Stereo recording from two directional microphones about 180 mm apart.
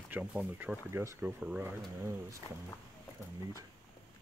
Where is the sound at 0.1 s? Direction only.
5° right (ahead or behind).